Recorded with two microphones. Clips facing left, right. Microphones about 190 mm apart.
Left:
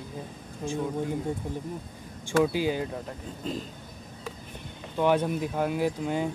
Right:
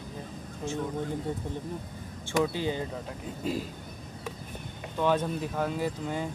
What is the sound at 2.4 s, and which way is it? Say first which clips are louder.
Speech: left 4 dB; 10° left (ahead or behind).